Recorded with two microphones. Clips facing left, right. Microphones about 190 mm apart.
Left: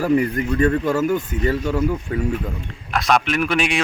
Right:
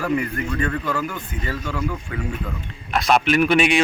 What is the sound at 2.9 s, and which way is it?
Speech, centre (ahead or behind).